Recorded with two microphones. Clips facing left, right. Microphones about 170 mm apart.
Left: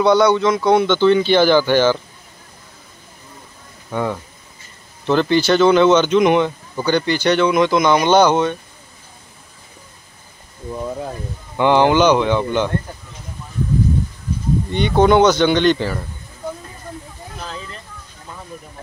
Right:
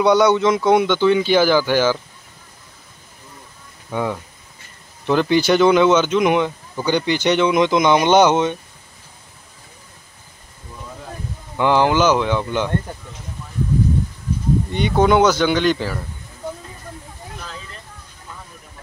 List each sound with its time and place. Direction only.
0.0 s speech: 15° right (ahead or behind)
3.9 s speech: 5° right (ahead or behind)
11.5 s speech: centre (ahead or behind)
14.7 s speech: 5° right (ahead or behind)